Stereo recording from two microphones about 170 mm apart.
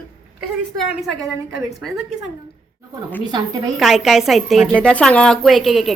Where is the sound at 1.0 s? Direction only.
Centre (ahead or behind).